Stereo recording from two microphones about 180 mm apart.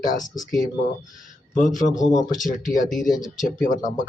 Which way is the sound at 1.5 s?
45° left (ahead or behind).